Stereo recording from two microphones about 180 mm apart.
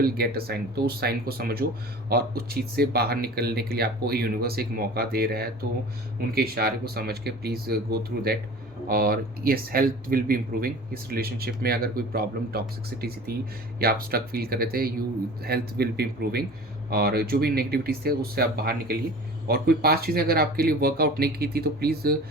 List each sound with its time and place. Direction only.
0.0 s speech: 60° right (ahead or behind)